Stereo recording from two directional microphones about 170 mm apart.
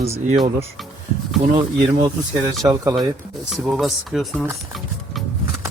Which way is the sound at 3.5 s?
Centre (ahead or behind).